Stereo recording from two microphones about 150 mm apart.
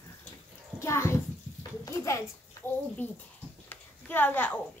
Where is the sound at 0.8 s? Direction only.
20° left (ahead or behind).